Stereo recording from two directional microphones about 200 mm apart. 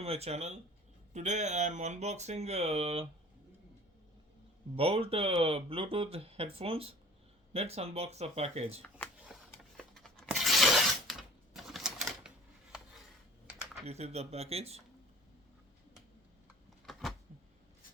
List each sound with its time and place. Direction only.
0.0 s speech: 30° right (ahead or behind)
4.8 s speech: 30° right (ahead or behind)
9.3 s a sound: centre (ahead or behind)
9.7 s tearing: centre (ahead or behind)
13.8 s speech: 30° right (ahead or behind)
16.8 s a sound: centre (ahead or behind)